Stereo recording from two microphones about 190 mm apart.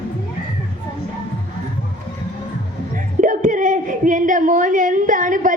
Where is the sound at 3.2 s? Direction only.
40° right (ahead or behind).